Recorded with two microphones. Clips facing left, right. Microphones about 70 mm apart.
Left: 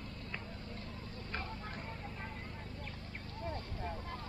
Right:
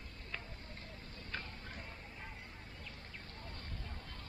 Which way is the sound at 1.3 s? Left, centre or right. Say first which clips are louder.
Left 3 dB; left.